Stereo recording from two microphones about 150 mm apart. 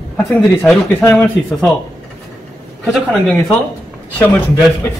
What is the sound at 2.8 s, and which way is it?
A man's voice, 5° right (ahead or behind).